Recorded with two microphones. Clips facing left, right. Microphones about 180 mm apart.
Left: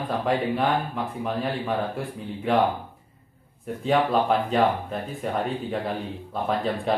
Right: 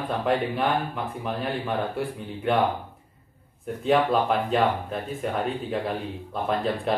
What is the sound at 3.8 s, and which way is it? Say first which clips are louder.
Speech: even; centre (ahead or behind).